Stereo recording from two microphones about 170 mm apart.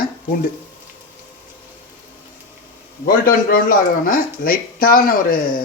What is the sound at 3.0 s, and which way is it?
Speech, 60° left (ahead or behind).